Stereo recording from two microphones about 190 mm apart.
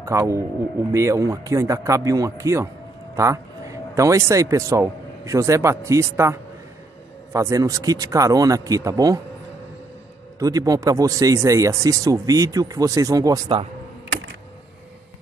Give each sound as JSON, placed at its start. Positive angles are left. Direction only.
{"t": 0.0, "sound": "speech", "side_deg": -15}
{"t": 10.4, "sound": "speech", "side_deg": -20}